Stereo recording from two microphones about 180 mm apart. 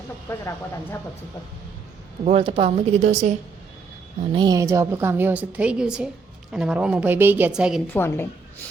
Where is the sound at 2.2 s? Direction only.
30° right (ahead or behind).